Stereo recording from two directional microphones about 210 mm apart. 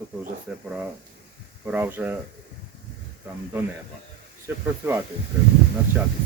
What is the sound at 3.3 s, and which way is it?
Speech, 10° right (ahead or behind).